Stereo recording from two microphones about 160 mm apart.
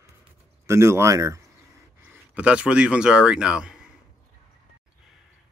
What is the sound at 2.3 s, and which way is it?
Speech, 5° right (ahead or behind).